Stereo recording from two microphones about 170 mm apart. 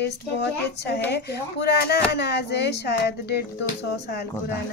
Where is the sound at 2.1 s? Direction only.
80° left.